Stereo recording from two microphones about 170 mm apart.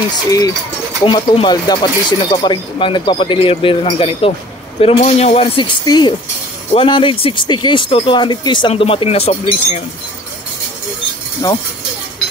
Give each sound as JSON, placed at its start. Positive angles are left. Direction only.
{"t": 1.0, "sound": "speech", "side_deg": 30}
{"t": 5.9, "sound": "speech", "side_deg": 25}
{"t": 11.4, "sound": "speech", "side_deg": 15}